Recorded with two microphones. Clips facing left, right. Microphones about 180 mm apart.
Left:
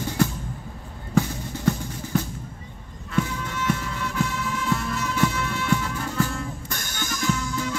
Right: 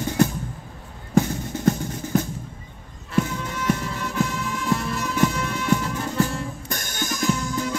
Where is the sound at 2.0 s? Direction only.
40° right (ahead or behind).